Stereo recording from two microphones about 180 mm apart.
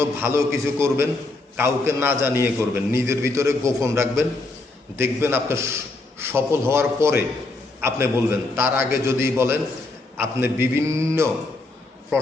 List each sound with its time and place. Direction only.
0.0 s a man's voice: 15° right (ahead or behind)